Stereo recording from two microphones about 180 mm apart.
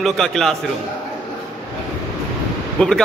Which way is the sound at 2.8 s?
5° left (ahead or behind).